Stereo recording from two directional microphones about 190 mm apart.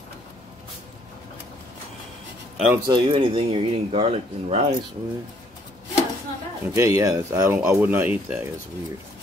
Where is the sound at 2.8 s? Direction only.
25° right (ahead or behind).